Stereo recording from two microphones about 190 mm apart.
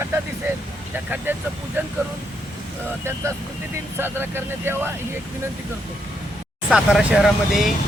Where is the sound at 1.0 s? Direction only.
10° right (ahead or behind).